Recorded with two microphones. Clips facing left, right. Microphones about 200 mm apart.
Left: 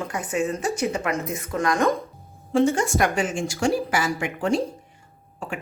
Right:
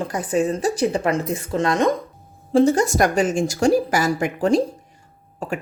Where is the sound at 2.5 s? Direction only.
40° right (ahead or behind).